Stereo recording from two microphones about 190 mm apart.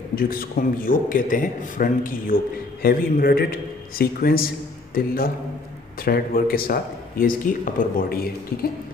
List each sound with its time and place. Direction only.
0.1 s a man's voice: 50° left (ahead or behind)